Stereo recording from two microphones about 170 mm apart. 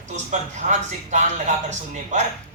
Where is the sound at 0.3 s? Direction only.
45° right (ahead or behind).